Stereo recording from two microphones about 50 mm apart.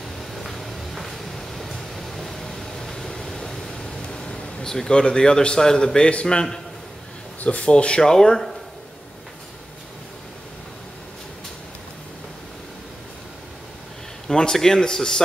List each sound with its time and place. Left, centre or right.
0.2 s a sound: centre
4.6 s a man's voice: centre
7.4 s a man's voice: left
14.2 s a man's voice: centre